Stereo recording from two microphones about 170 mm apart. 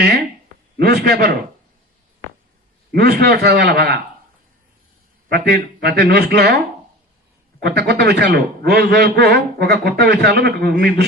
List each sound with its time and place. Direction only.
0.8 s a man's voice: 70° right (ahead or behind)
2.9 s a man's voice: 70° right (ahead or behind)
5.3 s a man's voice: 70° right (ahead or behind)
7.6 s a man's voice: 75° right (ahead or behind)